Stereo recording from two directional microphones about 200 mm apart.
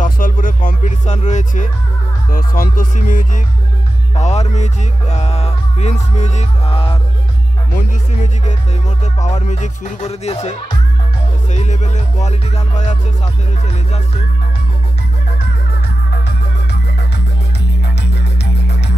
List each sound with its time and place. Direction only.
0.0 s speech: 40° left (ahead or behind)
4.1 s music: 35° left (ahead or behind)
17.9 s music: 60° left (ahead or behind)